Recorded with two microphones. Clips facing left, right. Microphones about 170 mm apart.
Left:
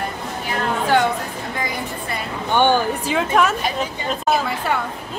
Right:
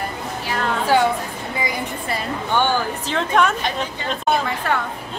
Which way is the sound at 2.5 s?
20° left (ahead or behind).